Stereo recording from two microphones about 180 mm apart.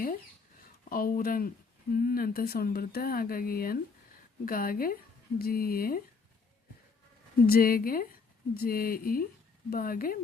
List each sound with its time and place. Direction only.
0.9 s a woman's voice: 55° left (ahead or behind)
7.4 s a woman's voice: 55° left (ahead or behind)